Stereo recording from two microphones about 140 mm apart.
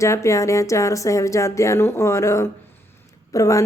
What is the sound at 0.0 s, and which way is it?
Speech, 20° left (ahead or behind).